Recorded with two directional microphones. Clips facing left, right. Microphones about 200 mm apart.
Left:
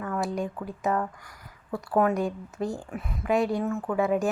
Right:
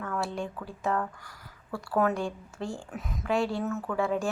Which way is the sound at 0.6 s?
20° left (ahead or behind).